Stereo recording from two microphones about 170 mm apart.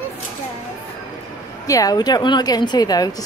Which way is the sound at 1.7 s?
20° left (ahead or behind).